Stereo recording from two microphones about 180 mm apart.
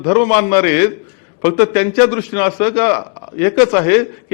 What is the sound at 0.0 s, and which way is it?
A man's voice, 15° left (ahead or behind).